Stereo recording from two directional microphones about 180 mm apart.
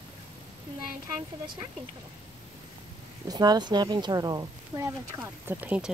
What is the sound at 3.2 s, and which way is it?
Speech, 20° right (ahead or behind).